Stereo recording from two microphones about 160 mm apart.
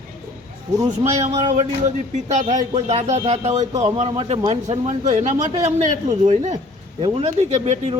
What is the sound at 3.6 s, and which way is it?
Speech, 20° right (ahead or behind).